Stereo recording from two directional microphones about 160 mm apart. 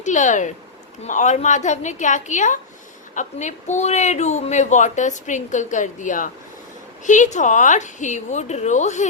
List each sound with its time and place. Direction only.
0.0 s speech: 50° left (ahead or behind)